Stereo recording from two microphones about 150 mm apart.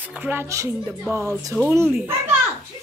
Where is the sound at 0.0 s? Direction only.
10° right (ahead or behind).